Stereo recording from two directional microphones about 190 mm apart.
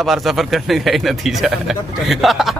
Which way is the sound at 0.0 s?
Centre (ahead or behind).